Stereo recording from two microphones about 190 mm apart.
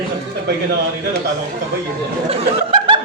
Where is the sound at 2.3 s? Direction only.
25° right (ahead or behind).